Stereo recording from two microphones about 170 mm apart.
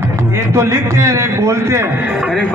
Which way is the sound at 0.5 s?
15° right (ahead or behind).